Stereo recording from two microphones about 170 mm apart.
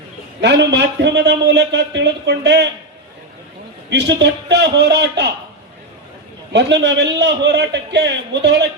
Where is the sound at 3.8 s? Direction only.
90° right.